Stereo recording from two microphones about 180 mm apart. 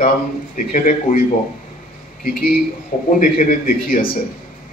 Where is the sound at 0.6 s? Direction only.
45° left (ahead or behind).